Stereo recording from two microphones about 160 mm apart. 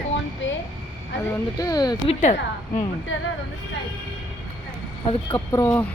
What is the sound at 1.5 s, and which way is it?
Speech, 20° left (ahead or behind).